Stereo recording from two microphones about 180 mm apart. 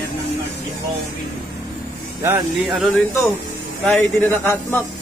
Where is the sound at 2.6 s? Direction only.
Centre (ahead or behind).